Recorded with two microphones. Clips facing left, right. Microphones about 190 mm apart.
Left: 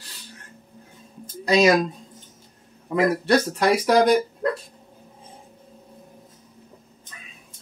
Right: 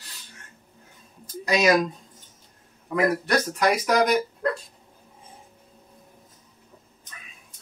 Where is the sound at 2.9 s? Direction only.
25° left (ahead or behind).